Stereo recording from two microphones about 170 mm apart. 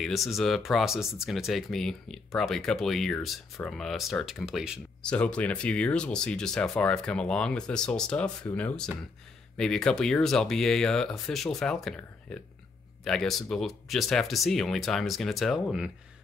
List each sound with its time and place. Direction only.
0.0 s speech: centre (ahead or behind)
5.1 s speech: 10° left (ahead or behind)